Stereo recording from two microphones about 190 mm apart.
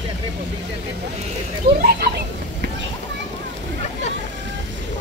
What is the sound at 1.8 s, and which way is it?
Speech, 55° right (ahead or behind).